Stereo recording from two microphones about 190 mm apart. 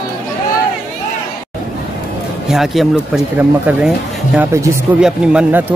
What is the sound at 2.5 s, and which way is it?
A man's voice, centre (ahead or behind).